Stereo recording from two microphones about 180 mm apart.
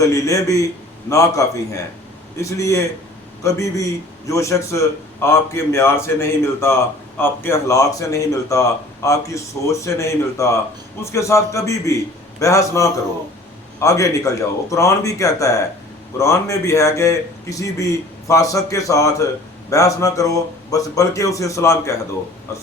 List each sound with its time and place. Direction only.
0.0 s a man's voice: 20° left (ahead or behind)